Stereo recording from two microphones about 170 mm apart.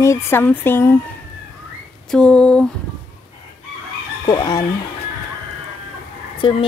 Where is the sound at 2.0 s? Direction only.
5° left (ahead or behind).